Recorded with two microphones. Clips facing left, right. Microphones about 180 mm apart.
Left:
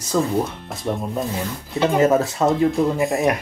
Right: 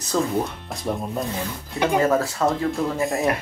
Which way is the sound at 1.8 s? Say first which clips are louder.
Left 3 dB; 20° left (ahead or behind).